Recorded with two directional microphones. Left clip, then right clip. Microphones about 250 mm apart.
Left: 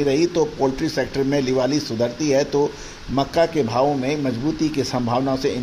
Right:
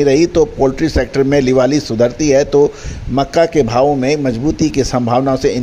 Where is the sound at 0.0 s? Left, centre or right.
Right.